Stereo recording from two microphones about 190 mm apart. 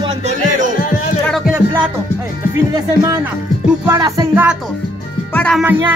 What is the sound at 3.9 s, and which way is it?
Music, 15° right (ahead or behind).